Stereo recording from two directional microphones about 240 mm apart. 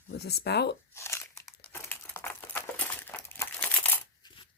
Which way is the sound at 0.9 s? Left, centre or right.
Centre.